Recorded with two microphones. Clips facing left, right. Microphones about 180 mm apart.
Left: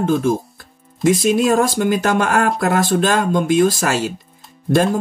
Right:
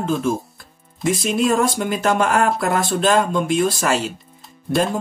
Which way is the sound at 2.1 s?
45° left (ahead or behind).